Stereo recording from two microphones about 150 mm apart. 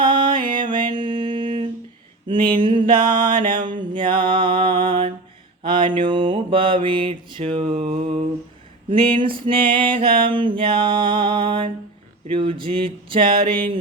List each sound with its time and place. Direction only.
0.0 s music: 30° right (ahead or behind)
2.2 s a sound: 35° right (ahead or behind)
5.6 s mantra: 35° right (ahead or behind)
9.2 s mantra: 35° right (ahead or behind)